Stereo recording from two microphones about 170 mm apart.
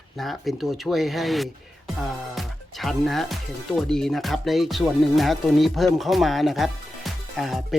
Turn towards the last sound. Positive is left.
turn(degrees=0)  # may be behind; listen again after turning